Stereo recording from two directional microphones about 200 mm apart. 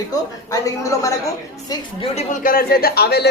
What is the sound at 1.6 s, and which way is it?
Speech, 30° left (ahead or behind).